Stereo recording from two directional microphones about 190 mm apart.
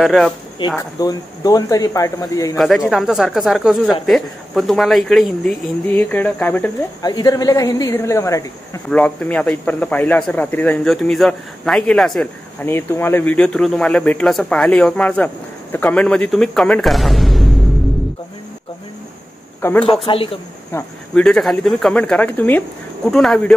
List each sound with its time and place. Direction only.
0.0 s speech: centre (ahead or behind)
0.7 s speech: 20° left (ahead or behind)
2.5 s speech: centre (ahead or behind)
7.0 s speech: 20° left (ahead or behind); by 12.3 s centre (ahead or behind)
12.6 s speech: 10° left (ahead or behind)
19.6 s speech: 10° left (ahead or behind)
21.1 s speech: 5° left (ahead or behind)